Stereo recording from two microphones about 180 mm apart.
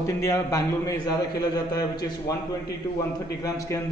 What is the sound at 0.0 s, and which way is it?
A man's voice, 20° left (ahead or behind).